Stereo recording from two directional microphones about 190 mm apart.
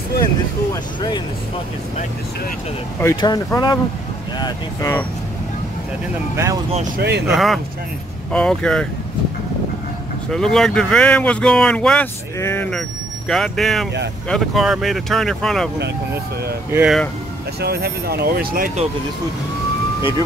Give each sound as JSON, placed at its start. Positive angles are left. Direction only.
{"t": 3.0, "sound": "speech", "side_deg": 20}
{"t": 6.3, "sound": "speech", "side_deg": -15}
{"t": 7.0, "sound": "speech", "side_deg": -60}
{"t": 7.2, "sound": "speech", "side_deg": 0}
{"t": 10.3, "sound": "speech", "side_deg": 0}
{"t": 16.7, "sound": "speech", "side_deg": -5}
{"t": 17.6, "sound": "speech", "side_deg": -55}